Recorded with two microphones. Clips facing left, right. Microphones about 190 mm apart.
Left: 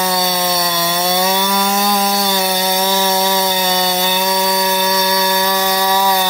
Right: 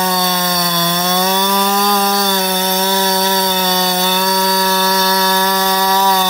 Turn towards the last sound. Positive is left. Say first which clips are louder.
# right 1 dB
turn(degrees=10)  # may be behind; listen again after turning